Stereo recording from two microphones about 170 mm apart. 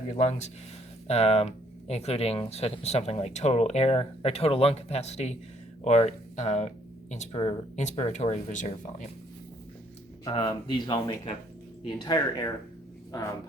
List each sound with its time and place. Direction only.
0.1 s speech: 40° left (ahead or behind)
10.2 s speech: 25° left (ahead or behind)